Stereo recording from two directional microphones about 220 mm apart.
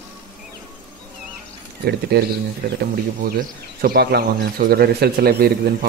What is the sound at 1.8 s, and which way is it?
Speech, 45° right (ahead or behind).